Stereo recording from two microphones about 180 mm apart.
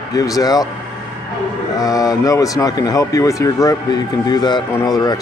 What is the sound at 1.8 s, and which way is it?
Speech, 20° left (ahead or behind).